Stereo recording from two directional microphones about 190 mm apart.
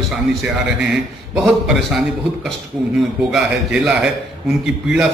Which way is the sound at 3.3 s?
5° right (ahead or behind).